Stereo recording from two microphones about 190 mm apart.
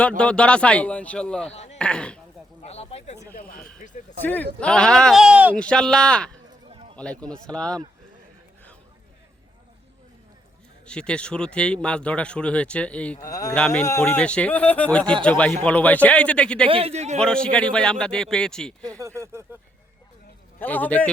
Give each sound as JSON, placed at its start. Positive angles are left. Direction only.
{"t": 0.2, "sound": "speech", "side_deg": 5}
{"t": 1.5, "sound": "speech", "side_deg": 35}
{"t": 1.8, "sound": "speech", "side_deg": 5}
{"t": 2.6, "sound": "speech", "side_deg": 35}
{"t": 3.3, "sound": "speech", "side_deg": 50}
{"t": 4.2, "sound": "speech", "side_deg": 10}
{"t": 5.5, "sound": "speech", "side_deg": 5}
{"t": 10.8, "sound": "speech", "side_deg": 5}
{"t": 13.2, "sound": "speech", "side_deg": 20}
{"t": 13.5, "sound": "speech", "side_deg": 5}
{"t": 16.6, "sound": "a man's voice", "side_deg": -30}
{"t": 17.2, "sound": "speech", "side_deg": 5}
{"t": 18.8, "sound": "speech", "side_deg": -20}
{"t": 20.6, "sound": "speech", "side_deg": 10}